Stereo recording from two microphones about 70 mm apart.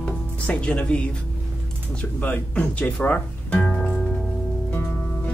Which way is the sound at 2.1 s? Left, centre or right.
Left.